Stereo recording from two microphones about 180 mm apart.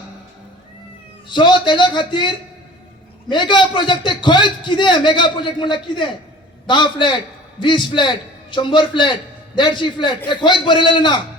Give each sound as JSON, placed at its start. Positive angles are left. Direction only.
{"t": 1.3, "sound": "a man's voice", "side_deg": 25}